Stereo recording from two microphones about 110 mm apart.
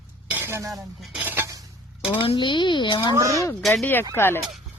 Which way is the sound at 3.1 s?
30° right (ahead or behind).